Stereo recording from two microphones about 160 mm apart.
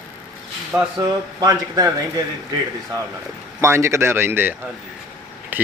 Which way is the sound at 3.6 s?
15° right (ahead or behind).